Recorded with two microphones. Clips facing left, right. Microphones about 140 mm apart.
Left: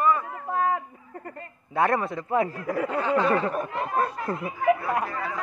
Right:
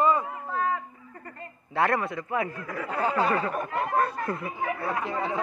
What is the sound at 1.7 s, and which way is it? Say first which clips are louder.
A man's voice: left 2 dB; 20° left (ahead or behind).